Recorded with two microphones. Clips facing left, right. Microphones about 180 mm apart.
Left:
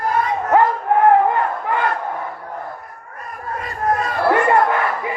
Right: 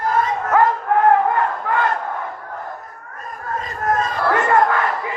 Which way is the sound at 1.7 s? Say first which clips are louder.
Even; 20° left (ahead or behind).